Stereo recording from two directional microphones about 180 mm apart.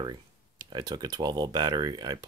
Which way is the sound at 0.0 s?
25° right (ahead or behind).